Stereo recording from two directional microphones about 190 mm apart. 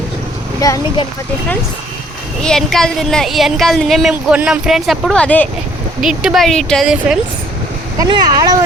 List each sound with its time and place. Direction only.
0.6 s speech: 20° left (ahead or behind)
2.4 s speech: 5° left (ahead or behind)
7.9 s speech: 20° right (ahead or behind)